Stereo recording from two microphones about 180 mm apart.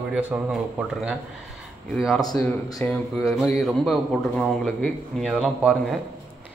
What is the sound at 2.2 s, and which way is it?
Speech, 20° left (ahead or behind).